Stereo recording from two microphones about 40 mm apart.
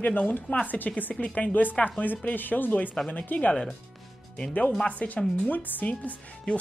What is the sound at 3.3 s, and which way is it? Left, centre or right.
Speech, left.